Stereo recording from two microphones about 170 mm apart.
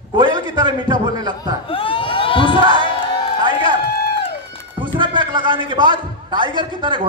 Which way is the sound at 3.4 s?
30° right (ahead or behind).